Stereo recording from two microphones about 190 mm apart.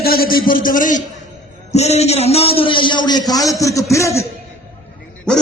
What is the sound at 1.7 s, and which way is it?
A man's voice, 35° left (ahead or behind).